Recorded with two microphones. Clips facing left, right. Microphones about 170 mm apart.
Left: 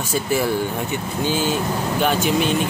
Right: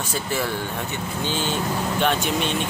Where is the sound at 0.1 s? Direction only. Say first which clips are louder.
Left 7 dB; 10° left (ahead or behind).